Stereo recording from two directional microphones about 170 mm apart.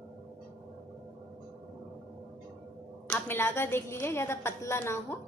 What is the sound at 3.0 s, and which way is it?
A woman's voice, 10° left (ahead or behind).